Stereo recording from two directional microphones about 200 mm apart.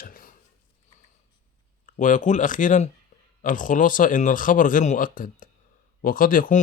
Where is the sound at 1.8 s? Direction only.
40° left (ahead or behind).